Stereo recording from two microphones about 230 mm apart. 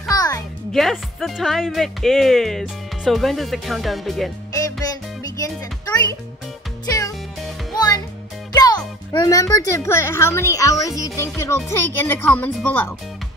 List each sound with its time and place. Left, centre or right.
0.1 s music: centre
0.7 s speech: centre
4.6 s music: centre
7.7 s music: centre
8.5 s speech: centre